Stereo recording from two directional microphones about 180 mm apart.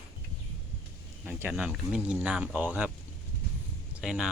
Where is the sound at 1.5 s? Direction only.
5° right (ahead or behind).